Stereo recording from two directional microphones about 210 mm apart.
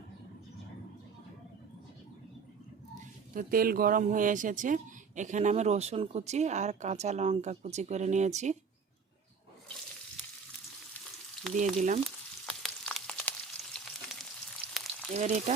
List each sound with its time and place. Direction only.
3.0 s speech: 40° right (ahead or behind)
12.0 s frying: centre (ahead or behind)
15.1 s speech: 35° right (ahead or behind)